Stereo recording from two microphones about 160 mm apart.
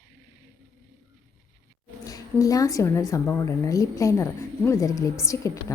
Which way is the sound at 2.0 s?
20° left (ahead or behind).